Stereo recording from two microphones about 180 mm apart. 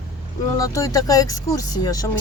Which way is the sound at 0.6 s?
20° left (ahead or behind).